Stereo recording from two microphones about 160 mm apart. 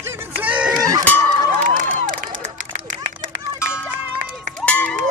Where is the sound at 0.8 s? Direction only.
25° right (ahead or behind).